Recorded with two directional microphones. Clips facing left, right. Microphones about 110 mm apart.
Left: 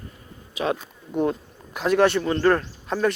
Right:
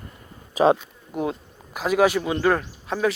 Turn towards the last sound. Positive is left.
turn(degrees=-5)  # may be behind; listen again after turning